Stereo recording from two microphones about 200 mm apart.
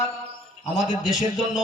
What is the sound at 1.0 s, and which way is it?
Speech, centre (ahead or behind).